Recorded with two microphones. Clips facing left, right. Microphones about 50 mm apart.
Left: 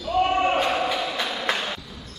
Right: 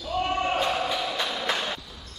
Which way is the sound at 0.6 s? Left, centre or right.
Left.